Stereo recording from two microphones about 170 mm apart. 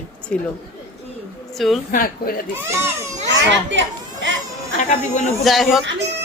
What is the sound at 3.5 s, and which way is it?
Baby cry, 90° right.